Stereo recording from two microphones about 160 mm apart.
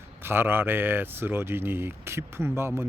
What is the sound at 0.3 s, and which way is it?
Speech, 15° right (ahead or behind).